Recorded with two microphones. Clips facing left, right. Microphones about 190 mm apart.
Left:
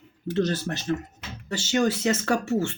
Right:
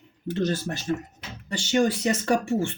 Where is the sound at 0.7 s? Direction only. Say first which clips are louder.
Left 1 dB; 20° right (ahead or behind).